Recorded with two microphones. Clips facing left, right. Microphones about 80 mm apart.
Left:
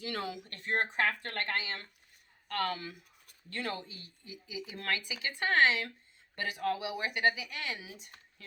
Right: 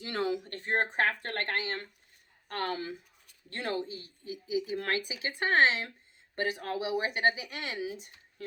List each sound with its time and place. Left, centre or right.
0.0 s speech: right